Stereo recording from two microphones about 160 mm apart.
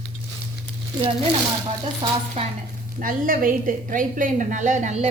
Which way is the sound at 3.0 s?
60° right (ahead or behind).